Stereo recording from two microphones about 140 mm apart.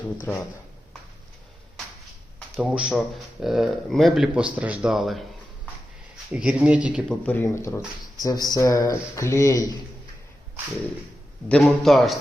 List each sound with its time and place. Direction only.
0.3 s speech: centre (ahead or behind)
2.6 s speech: 5° right (ahead or behind)
6.3 s speech: 10° right (ahead or behind)
7.1 s speech: 10° left (ahead or behind)
11.4 s speech: 5° left (ahead or behind)